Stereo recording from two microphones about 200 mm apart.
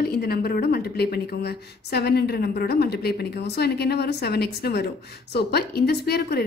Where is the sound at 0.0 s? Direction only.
50° left (ahead or behind).